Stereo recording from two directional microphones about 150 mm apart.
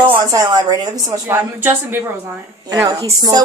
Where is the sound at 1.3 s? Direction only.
15° right (ahead or behind).